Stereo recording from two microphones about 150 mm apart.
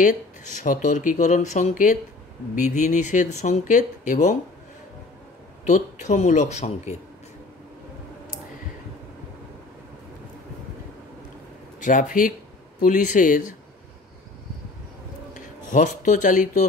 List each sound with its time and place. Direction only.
0.0 s speech: 55° left (ahead or behind)
5.7 s speech: 50° left (ahead or behind)
11.8 s speech: 60° left (ahead or behind)
15.3 s speech: 60° left (ahead or behind)